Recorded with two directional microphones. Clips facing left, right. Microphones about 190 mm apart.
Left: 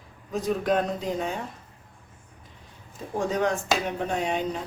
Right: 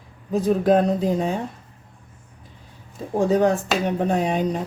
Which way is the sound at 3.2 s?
35° right (ahead or behind).